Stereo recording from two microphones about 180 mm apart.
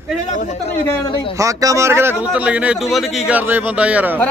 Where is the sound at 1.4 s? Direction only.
20° right (ahead or behind).